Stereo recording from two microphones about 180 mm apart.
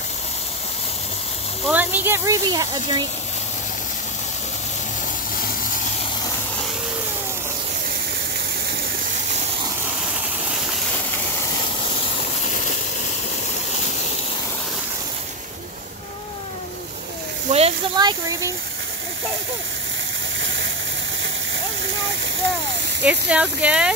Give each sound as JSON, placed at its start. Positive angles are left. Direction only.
{"t": 1.7, "sound": "speech", "side_deg": -10}
{"t": 17.5, "sound": "a sound", "side_deg": -35}
{"t": 23.0, "sound": "speech", "side_deg": -5}